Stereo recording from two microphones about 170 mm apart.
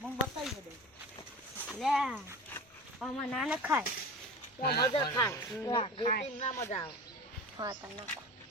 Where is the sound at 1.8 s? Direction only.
5° right (ahead or behind).